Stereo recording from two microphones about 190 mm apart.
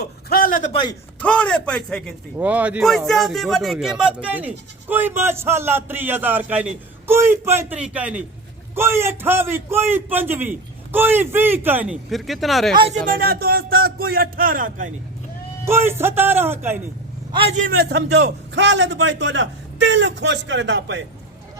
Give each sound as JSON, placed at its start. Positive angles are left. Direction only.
{"t": 0.0, "sound": "a sound", "side_deg": 55}
{"t": 0.7, "sound": "speech", "side_deg": 25}
{"t": 1.2, "sound": "a man's voice", "side_deg": 5}
{"t": 2.4, "sound": "speech", "side_deg": -10}
{"t": 12.7, "sound": "speech", "side_deg": -30}
{"t": 13.1, "sound": "a man's voice", "side_deg": -50}
{"t": 15.6, "sound": "speech", "side_deg": -10}
{"t": 17.3, "sound": "speech", "side_deg": -30}
{"t": 17.7, "sound": "a man's voice", "side_deg": -60}